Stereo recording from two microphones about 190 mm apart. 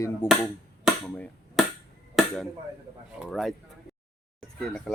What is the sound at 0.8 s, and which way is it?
Chop, centre (ahead or behind).